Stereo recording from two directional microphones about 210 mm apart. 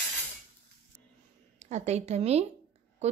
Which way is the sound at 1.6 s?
30° right (ahead or behind).